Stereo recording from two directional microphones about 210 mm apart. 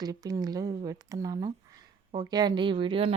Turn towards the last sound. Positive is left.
turn(degrees=-25)  # may be behind; listen again after turning